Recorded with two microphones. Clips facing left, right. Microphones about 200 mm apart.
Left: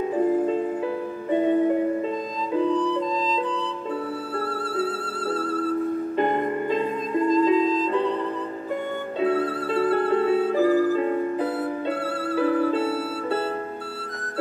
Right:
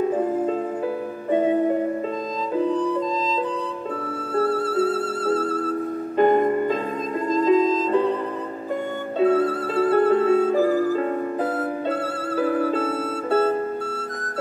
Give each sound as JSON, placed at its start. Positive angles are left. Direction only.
{"t": 6.1, "sound": "music", "side_deg": -45}
{"t": 9.2, "sound": "music", "side_deg": -45}
{"t": 12.4, "sound": "music", "side_deg": -45}